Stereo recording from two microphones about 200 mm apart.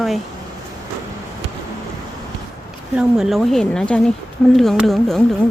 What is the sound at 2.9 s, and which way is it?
Speech, 5° right (ahead or behind).